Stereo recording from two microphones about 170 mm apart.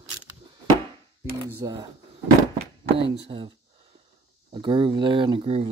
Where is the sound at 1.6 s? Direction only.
25° right (ahead or behind).